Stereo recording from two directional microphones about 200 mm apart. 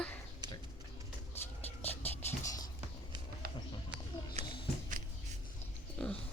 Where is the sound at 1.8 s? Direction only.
10° left (ahead or behind).